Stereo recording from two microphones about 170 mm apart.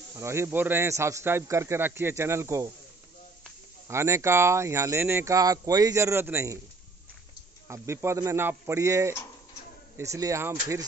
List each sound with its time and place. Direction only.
0.2 s speech: 15° right (ahead or behind)
3.8 s speech: 15° right (ahead or behind)
7.6 s speech: 15° right (ahead or behind)